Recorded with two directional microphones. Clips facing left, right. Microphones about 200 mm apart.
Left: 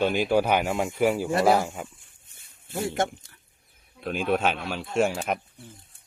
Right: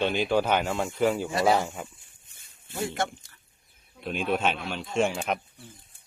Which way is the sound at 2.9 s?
50° left (ahead or behind).